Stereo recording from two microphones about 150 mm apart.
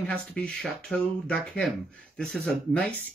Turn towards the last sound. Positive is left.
turn(degrees=10)  # may be behind; listen again after turning